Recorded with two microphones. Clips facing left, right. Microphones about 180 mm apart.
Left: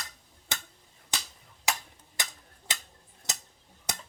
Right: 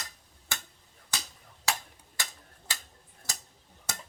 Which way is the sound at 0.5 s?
20° left (ahead or behind).